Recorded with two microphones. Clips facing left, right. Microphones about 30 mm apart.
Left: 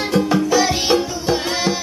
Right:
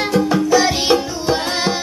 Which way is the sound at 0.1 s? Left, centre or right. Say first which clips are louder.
Right 1 dB; centre.